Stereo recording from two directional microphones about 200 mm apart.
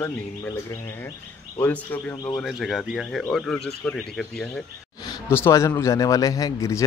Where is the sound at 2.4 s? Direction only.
Centre (ahead or behind).